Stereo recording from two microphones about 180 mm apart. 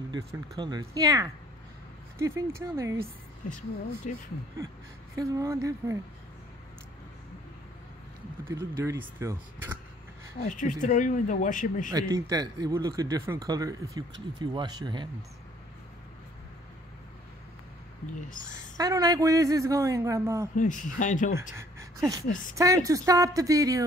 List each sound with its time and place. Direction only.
0.1 s a man's voice: 25° right (ahead or behind)
4.1 s speech: 45° left (ahead or behind)
5.1 s a man's voice: 20° right (ahead or behind)
8.5 s a man's voice: 15° right (ahead or behind)
10.5 s speech: 45° left (ahead or behind)
11.9 s speech: 20° right (ahead or behind)
18.8 s a man's voice: 20° right (ahead or behind)
20.5 s speech: 45° left (ahead or behind)
21.4 s speech: 15° right (ahead or behind)